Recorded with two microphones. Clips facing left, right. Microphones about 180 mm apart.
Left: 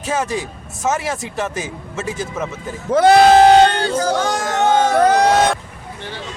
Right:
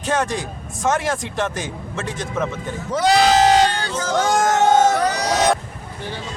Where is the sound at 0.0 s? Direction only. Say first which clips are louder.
Even; 5° left (ahead or behind).